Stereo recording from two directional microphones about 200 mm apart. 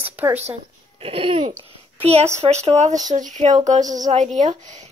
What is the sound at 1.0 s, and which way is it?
Babbling, 25° right (ahead or behind).